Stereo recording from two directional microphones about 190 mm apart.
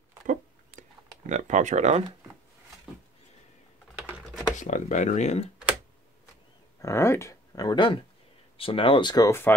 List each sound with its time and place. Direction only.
0.8 s a sound: 45° right (ahead or behind)
1.3 s speech: 40° right (ahead or behind)
4.0 s computer keyboard: 10° right (ahead or behind)
4.6 s speech: 40° left (ahead or behind)
6.8 s speech: 15° left (ahead or behind)